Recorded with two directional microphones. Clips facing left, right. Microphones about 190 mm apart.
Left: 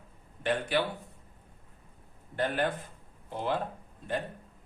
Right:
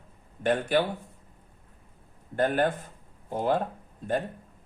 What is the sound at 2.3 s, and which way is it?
A man's voice, 45° right (ahead or behind).